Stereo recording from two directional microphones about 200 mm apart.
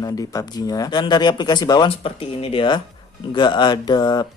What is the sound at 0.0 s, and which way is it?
Speech, 15° left (ahead or behind).